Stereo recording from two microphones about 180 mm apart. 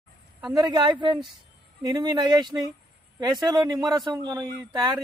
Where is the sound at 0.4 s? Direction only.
20° right (ahead or behind).